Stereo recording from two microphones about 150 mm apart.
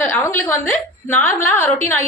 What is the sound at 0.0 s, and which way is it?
A woman's voice, 15° left (ahead or behind).